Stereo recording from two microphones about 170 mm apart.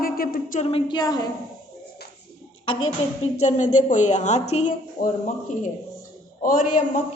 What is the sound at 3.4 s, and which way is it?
A woman's voice, 45° left (ahead or behind).